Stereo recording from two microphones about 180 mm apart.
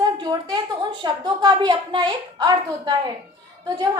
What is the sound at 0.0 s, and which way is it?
A woman's voice, 25° right (ahead or behind).